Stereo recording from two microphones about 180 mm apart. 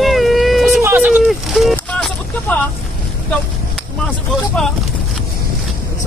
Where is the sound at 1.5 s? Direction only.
5° left (ahead or behind).